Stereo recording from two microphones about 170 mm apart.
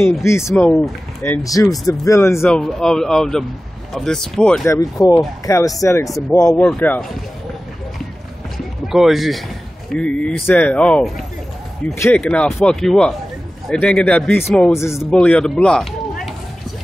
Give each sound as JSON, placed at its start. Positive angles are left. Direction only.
{"t": 0.2, "sound": "speech", "side_deg": 15}
{"t": 0.7, "sound": "speech", "side_deg": 0}
{"t": 1.2, "sound": "speech", "side_deg": 15}
{"t": 2.4, "sound": "speech", "side_deg": 0}
{"t": 4.6, "sound": "speech", "side_deg": 20}
{"t": 6.6, "sound": "speech", "side_deg": 5}
{"t": 8.8, "sound": "speech", "side_deg": 0}